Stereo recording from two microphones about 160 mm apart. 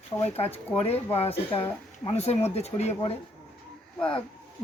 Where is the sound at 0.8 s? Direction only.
40° left (ahead or behind).